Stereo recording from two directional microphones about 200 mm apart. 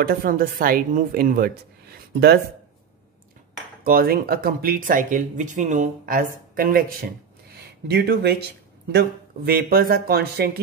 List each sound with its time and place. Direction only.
0.0 s speech: 45° right (ahead or behind)
3.8 s speech: 50° right (ahead or behind)